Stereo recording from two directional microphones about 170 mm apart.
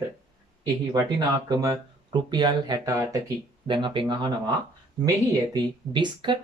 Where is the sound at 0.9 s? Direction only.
25° right (ahead or behind).